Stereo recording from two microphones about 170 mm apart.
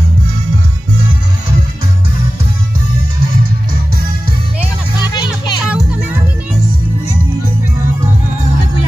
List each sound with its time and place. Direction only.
4.9 s music: 25° left (ahead or behind)
5.7 s music: 5° right (ahead or behind)